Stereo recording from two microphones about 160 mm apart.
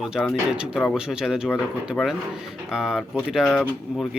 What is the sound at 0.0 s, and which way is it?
Speech, 5° right (ahead or behind).